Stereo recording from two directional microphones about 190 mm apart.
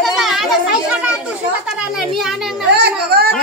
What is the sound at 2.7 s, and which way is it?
Speech, 55° right (ahead or behind).